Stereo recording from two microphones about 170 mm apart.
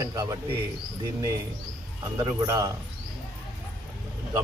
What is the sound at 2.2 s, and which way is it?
Speech, 15° right (ahead or behind).